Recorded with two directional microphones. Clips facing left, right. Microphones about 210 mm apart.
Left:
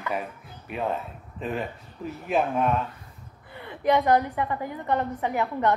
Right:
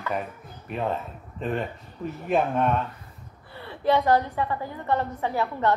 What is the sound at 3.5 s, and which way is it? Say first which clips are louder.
A woman's voice: even; 15° left (ahead or behind).